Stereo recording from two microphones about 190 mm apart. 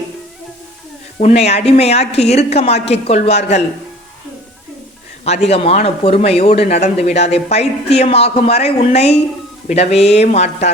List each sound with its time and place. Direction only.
1.2 s a man's voice: 35° left (ahead or behind)
5.2 s a man's voice: 35° left (ahead or behind)